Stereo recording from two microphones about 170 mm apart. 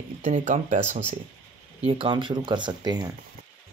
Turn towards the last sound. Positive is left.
turn(degrees=-25)  # may be behind; listen again after turning